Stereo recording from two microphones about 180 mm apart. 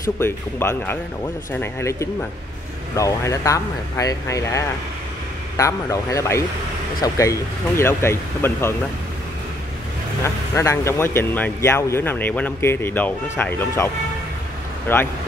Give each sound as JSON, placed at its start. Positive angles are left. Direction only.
{"t": 0.2, "sound": "speech", "side_deg": 15}
{"t": 10.2, "sound": "speech", "side_deg": 15}
{"t": 14.9, "sound": "speech", "side_deg": 10}